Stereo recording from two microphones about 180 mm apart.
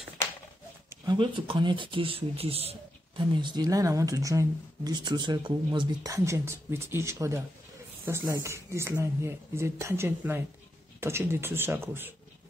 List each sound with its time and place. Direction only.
1.0 s speech: 25° right (ahead or behind)